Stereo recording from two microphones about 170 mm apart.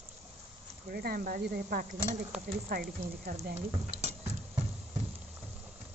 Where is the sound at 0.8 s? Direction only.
65° right (ahead or behind).